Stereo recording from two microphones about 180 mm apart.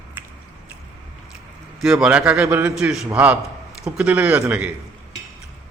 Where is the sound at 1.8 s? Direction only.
5° right (ahead or behind).